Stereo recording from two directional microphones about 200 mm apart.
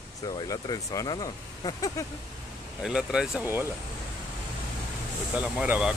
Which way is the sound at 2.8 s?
5° right (ahead or behind).